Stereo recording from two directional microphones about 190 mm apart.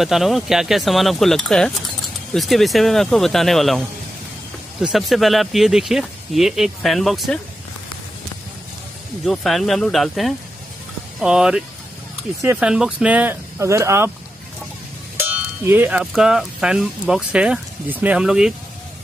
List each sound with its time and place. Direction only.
0.0 s speech: centre (ahead or behind)
9.2 s speech: centre (ahead or behind)
15.2 s speech: 10° right (ahead or behind)